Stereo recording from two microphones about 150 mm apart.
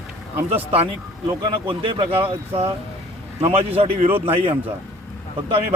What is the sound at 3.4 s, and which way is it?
Speech, 40° right (ahead or behind).